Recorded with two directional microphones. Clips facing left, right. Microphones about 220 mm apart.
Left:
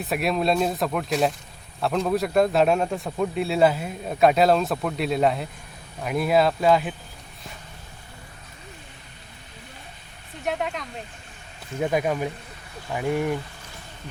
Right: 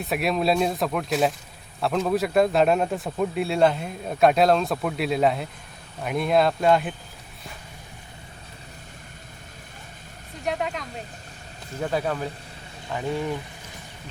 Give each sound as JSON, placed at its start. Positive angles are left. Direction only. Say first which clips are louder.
{"t": 0.0, "sound": "speech", "louder": "even", "side_deg": 0}
{"t": 10.4, "sound": "speech", "louder": "even", "side_deg": 0}
{"t": 11.8, "sound": "speech", "louder": "left 3 dB", "side_deg": 15}